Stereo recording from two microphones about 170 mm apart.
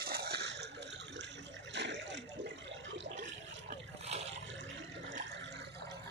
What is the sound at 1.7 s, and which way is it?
Water, 90° right.